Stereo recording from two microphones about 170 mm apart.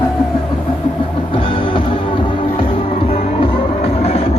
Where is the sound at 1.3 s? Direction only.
30° left (ahead or behind).